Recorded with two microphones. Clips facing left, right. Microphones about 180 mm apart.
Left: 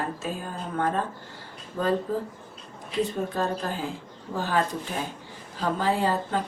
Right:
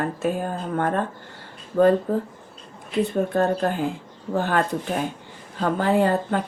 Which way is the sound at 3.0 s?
60° right (ahead or behind).